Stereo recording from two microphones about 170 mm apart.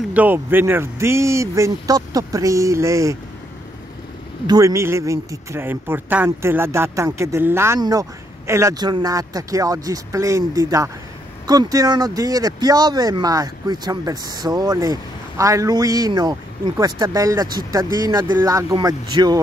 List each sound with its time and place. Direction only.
0.1 s speech: 10° right (ahead or behind)
4.5 s speech: 20° right (ahead or behind)